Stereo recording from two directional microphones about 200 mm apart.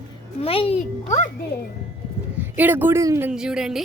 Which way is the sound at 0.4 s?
30° left (ahead or behind).